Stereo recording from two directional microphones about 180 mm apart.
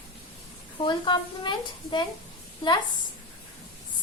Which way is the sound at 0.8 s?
25° left (ahead or behind).